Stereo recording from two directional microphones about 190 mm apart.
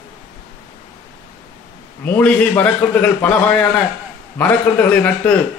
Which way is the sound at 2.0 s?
10° left (ahead or behind).